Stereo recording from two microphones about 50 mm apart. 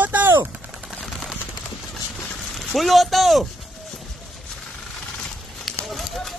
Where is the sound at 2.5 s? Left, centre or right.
Centre.